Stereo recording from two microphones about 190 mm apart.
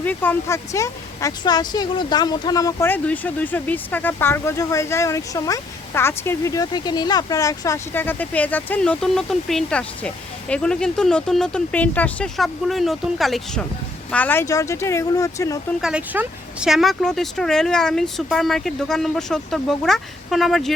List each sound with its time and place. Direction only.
0.0 s speech: 10° left (ahead or behind)
15.8 s speech: 5° right (ahead or behind)